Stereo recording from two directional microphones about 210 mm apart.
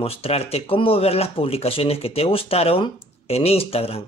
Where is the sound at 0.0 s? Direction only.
30° left (ahead or behind).